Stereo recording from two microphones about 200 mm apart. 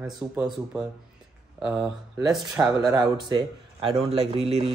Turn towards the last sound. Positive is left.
turn(degrees=-30)  # may be behind; listen again after turning